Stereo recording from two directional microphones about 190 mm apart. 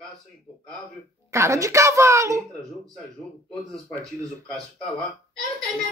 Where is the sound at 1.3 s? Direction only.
15° right (ahead or behind).